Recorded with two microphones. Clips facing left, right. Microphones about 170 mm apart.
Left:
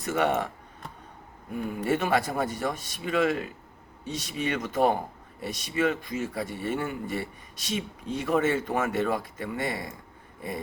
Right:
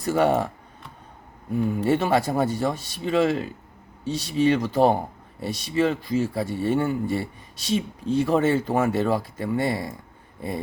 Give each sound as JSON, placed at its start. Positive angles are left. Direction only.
{"t": 0.0, "sound": "speech", "side_deg": -35}
{"t": 1.8, "sound": "speech", "side_deg": -30}